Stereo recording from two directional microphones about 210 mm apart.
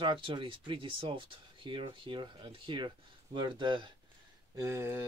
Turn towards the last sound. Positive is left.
turn(degrees=-10)  # may be behind; listen again after turning